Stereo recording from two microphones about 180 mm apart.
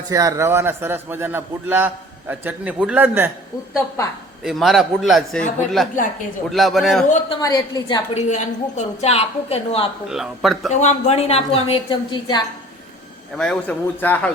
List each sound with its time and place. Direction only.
0.1 s a man's voice: 20° right (ahead or behind)
4.4 s a man's voice: centre (ahead or behind)
7.3 s a woman's voice: 20° left (ahead or behind)
8.1 s a woman's voice: 40° left (ahead or behind)
10.1 s a man's voice: centre (ahead or behind)
10.7 s a woman's voice: 40° left (ahead or behind)
13.3 s a man's voice: 5° left (ahead or behind)